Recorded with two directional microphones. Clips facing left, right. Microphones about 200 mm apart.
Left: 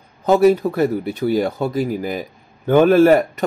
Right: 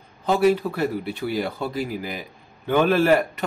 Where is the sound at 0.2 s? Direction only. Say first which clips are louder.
Left 6 dB; 45° left (ahead or behind).